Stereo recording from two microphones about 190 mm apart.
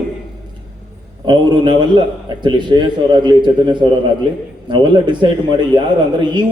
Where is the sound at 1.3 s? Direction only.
25° right (ahead or behind).